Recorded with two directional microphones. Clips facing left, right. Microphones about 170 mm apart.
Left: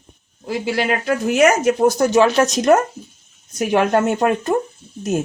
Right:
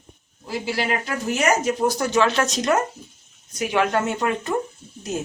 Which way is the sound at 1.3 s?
55° left (ahead or behind).